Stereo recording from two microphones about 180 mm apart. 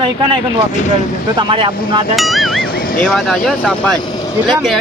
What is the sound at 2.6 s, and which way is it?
Speech, 60° left (ahead or behind).